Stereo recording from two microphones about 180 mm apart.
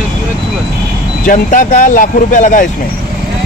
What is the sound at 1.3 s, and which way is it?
Speech, 45° left (ahead or behind).